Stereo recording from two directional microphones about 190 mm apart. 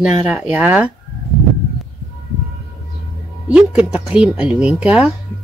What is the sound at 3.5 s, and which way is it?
Speech, 5° right (ahead or behind).